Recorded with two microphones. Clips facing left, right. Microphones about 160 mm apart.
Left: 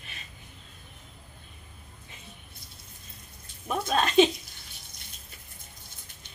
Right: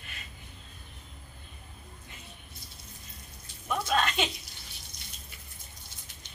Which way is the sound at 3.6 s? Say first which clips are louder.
Left 1 dB; 30° left (ahead or behind).